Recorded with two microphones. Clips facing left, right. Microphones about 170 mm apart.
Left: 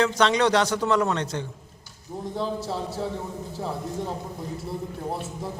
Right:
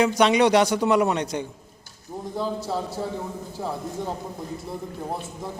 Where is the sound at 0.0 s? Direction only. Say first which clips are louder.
Right 3 dB; 10° right (ahead or behind).